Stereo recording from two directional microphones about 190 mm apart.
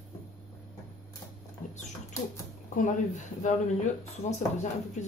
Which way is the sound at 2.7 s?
40° left (ahead or behind).